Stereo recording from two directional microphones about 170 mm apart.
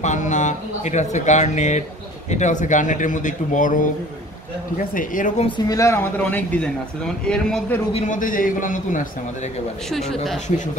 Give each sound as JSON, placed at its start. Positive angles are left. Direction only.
{"t": 0.0, "sound": "speech", "side_deg": 45}
{"t": 5.7, "sound": "speech", "side_deg": 15}
{"t": 8.1, "sound": "speech", "side_deg": 50}
{"t": 9.8, "sound": "speech", "side_deg": 0}